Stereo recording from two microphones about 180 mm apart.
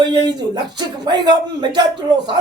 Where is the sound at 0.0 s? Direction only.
25° right (ahead or behind).